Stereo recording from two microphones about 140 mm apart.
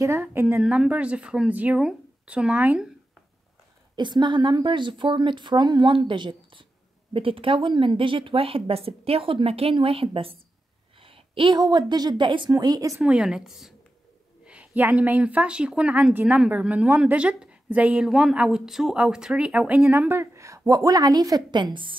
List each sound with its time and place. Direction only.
0.0 s a woman's voice: 20° right (ahead or behind)
3.9 s a woman's voice: 30° right (ahead or behind)
13.0 s a woman's voice: 5° right (ahead or behind); by 21.4 s 25° right (ahead or behind)